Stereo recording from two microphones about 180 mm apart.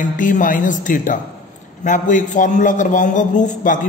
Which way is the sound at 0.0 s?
45° left (ahead or behind).